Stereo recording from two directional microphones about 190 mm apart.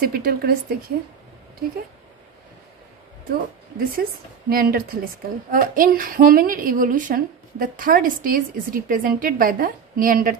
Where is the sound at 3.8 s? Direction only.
50° right (ahead or behind).